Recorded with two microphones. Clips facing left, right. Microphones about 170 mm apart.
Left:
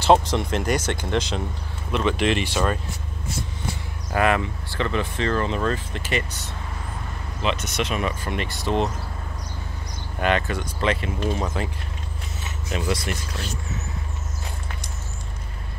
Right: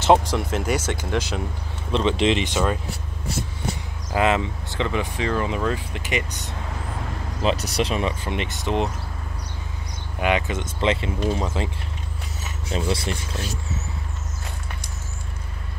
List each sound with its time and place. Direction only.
0.0 s speech: 15° right (ahead or behind)
1.9 s speech: 25° right (ahead or behind)
4.1 s speech: 20° right (ahead or behind)
7.4 s speech: 35° right (ahead or behind); by 8.8 s 15° right (ahead or behind)
10.2 s speech: 15° right (ahead or behind)
11.1 s speech: 10° right (ahead or behind)
12.6 s speech: 30° right (ahead or behind)